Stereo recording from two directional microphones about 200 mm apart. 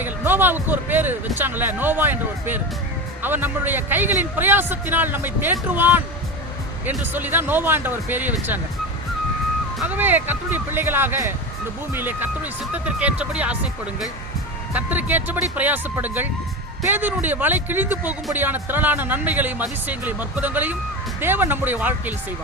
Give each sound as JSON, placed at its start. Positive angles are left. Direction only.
{"t": 0.0, "sound": "a man's voice", "side_deg": -10}
{"t": 9.7, "sound": "a man's voice", "side_deg": -10}